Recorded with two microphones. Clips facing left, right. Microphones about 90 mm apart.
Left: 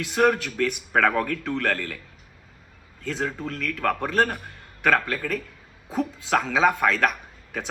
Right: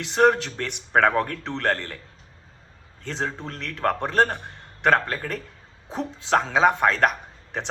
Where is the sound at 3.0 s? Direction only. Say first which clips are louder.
Left 1 dB; 30° right (ahead or behind).